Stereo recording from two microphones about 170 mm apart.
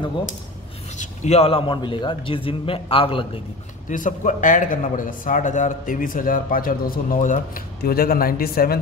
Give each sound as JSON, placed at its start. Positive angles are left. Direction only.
{"t": 0.9, "sound": "a man's voice", "side_deg": 40}
{"t": 3.9, "sound": "speech", "side_deg": 50}